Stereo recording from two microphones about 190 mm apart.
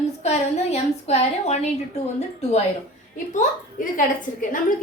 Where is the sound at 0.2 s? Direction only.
35° left (ahead or behind).